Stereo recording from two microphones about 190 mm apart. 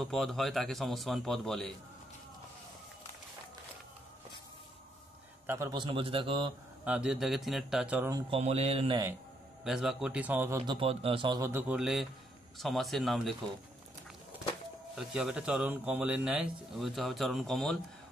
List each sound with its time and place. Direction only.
0.0 s a man's voice: centre (ahead or behind)
5.5 s a man's voice: 20° right (ahead or behind)
6.8 s a man's voice: 5° right (ahead or behind)
8.4 s a man's voice: 35° right (ahead or behind)
9.7 s a man's voice: centre (ahead or behind)
10.6 s a man's voice: 25° right (ahead or behind); by 13.4 s centre (ahead or behind)
15.0 s a man's voice: 5° right (ahead or behind)